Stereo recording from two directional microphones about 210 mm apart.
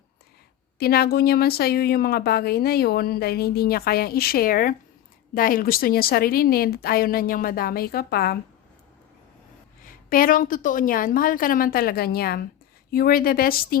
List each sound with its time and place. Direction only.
0.8 s a woman's voice: 45° left (ahead or behind)
9.8 s a woman's voice: 40° left (ahead or behind)